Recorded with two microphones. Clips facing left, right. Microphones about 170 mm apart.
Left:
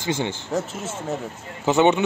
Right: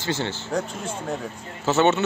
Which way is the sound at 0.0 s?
15° left (ahead or behind).